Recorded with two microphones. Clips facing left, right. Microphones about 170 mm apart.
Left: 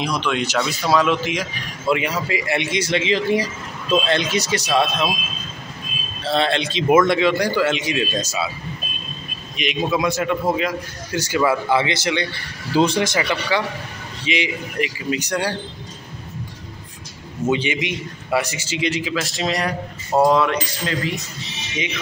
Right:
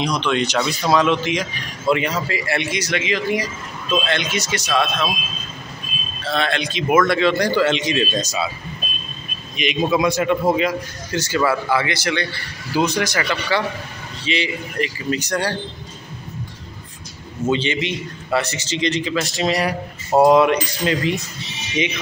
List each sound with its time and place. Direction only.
0.0 s a man's voice: 5° left (ahead or behind); by 5.1 s 30° left (ahead or behind)
6.2 s a man's voice: 30° left (ahead or behind); by 8.5 s 5° left (ahead or behind)
9.6 s a man's voice: centre (ahead or behind)
11.1 s a man's voice: 15° left (ahead or behind)
17.5 s a man's voice: 15° left (ahead or behind); by 19.7 s centre (ahead or behind)
20.2 s speech: 15° right (ahead or behind)